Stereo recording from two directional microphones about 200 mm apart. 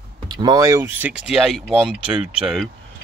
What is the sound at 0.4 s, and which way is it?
Speech, 20° right (ahead or behind).